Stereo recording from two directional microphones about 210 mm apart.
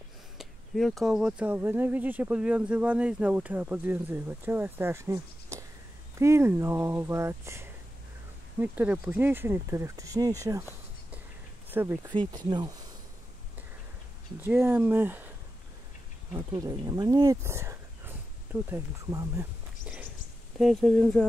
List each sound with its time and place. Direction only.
0.4 s speech: centre (ahead or behind); by 12.7 s 20° right (ahead or behind)
14.4 s speech: 10° right (ahead or behind)
16.3 s speech: 15° right (ahead or behind)
20.5 s speech: centre (ahead or behind)